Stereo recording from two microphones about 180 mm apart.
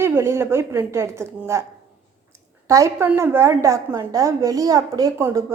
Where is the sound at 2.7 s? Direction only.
15° right (ahead or behind).